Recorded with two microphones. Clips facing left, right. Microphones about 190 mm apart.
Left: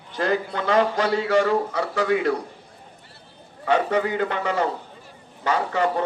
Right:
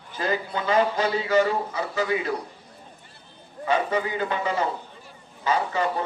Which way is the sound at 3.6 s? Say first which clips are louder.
Left 3 dB; 70° left (ahead or behind).